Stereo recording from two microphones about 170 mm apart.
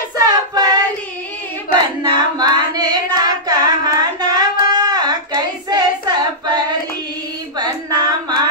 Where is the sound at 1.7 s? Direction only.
25° right (ahead or behind).